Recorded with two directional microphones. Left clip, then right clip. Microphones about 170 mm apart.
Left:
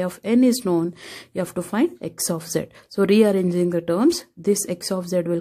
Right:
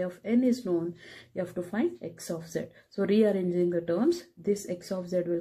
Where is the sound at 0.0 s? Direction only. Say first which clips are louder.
Left 8 dB; 55° left (ahead or behind).